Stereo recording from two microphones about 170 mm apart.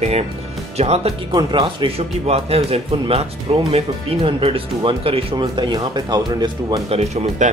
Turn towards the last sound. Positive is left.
turn(degrees=-40)  # may be behind; listen again after turning